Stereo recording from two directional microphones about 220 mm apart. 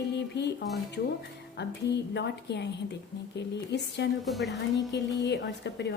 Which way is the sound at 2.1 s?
50° left (ahead or behind).